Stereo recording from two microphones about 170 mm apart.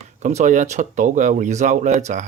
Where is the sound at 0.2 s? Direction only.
45° right (ahead or behind).